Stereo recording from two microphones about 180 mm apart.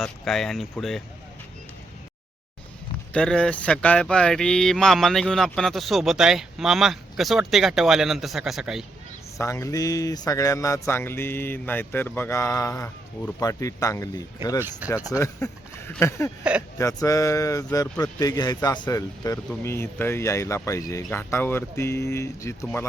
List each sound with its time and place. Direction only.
0.0 s speech: centre (ahead or behind)
3.1 s speech: 5° left (ahead or behind)
9.4 s speech: 15° left (ahead or behind)
16.4 s speech: 5° right (ahead or behind)
16.7 s speech: 20° left (ahead or behind)